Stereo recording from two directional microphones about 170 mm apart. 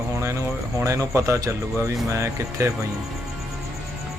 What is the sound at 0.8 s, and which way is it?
Speech, 15° right (ahead or behind).